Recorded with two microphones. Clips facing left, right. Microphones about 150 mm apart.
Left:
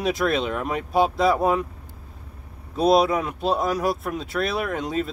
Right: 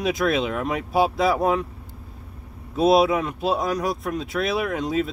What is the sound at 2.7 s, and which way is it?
Speech, centre (ahead or behind).